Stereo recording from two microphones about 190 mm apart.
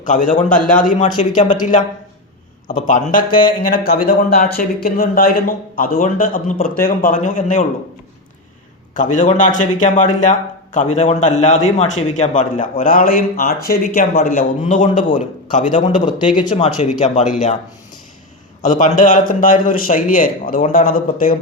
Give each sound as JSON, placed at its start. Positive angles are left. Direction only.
{"t": 0.0, "sound": "a man's voice", "side_deg": 40}
{"t": 0.4, "sound": "a man's voice", "side_deg": 5}
{"t": 0.8, "sound": "a man's voice", "side_deg": 40}
{"t": 9.0, "sound": "a man's voice", "side_deg": 40}
{"t": 18.6, "sound": "speech", "side_deg": 40}